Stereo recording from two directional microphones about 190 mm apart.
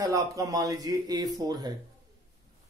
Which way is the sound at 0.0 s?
20° right (ahead or behind).